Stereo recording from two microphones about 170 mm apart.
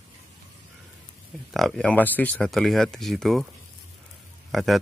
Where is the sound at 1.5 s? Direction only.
Centre (ahead or behind).